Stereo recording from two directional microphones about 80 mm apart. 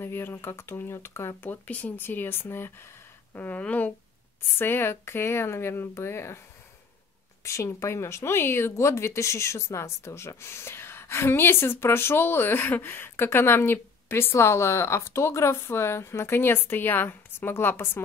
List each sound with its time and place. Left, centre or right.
0.0 s speech: left
3.3 s speech: centre
7.4 s speech: left